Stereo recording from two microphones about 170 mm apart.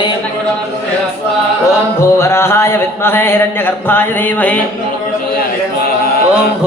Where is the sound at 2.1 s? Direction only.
15° left (ahead or behind).